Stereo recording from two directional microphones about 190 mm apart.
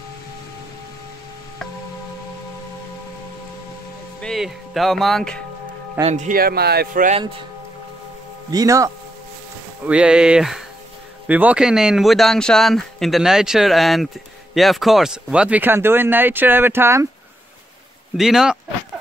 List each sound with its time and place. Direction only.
4.2 s speech: centre (ahead or behind)
6.0 s a man's voice: 40° right (ahead or behind)
8.5 s speech: 20° right (ahead or behind)
9.8 s speech: 5° right (ahead or behind)
18.1 s speech: centre (ahead or behind)